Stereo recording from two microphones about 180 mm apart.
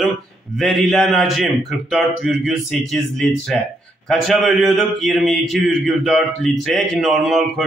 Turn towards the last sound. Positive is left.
turn(degrees=0)  # may be behind; listen again after turning